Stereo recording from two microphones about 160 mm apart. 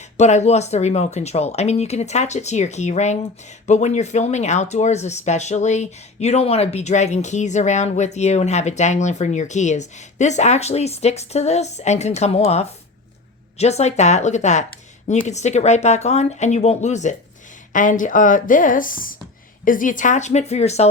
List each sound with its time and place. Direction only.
0.2 s speech: 45° left (ahead or behind)